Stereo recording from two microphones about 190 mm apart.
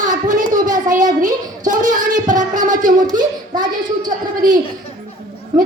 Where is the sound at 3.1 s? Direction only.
20° right (ahead or behind).